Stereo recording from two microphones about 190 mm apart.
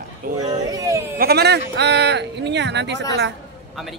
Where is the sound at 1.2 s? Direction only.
55° right (ahead or behind).